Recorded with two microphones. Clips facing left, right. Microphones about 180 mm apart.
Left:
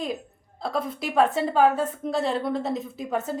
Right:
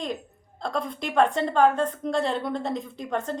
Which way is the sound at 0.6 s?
5° left (ahead or behind).